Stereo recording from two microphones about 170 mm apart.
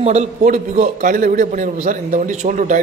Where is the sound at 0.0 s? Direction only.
40° right (ahead or behind).